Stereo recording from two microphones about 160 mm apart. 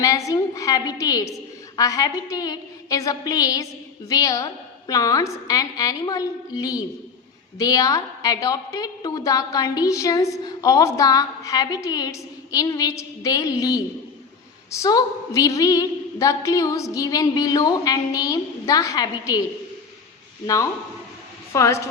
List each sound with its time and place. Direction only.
0.0 s a woman's voice: 20° left (ahead or behind)
21.5 s a woman's voice: 20° left (ahead or behind)